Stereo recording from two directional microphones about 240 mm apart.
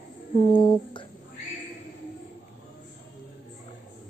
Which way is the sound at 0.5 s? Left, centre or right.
Centre.